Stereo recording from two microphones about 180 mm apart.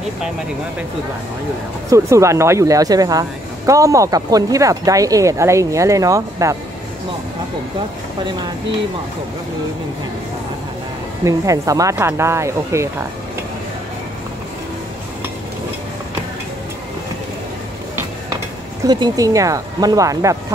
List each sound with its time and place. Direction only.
1.9 s speech: 15° right (ahead or behind)
11.2 s speech: 20° right (ahead or behind)
18.9 s speech: 25° right (ahead or behind)